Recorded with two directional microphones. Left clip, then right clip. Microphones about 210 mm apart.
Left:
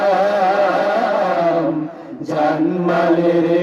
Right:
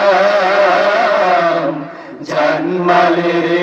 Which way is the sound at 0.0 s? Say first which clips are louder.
Right 4 dB; 55° left (ahead or behind).